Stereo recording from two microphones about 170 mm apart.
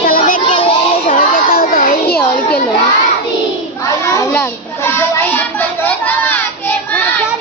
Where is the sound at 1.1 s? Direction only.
60° left (ahead or behind).